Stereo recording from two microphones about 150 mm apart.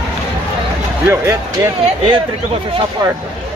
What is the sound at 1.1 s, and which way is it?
Speech, 20° right (ahead or behind).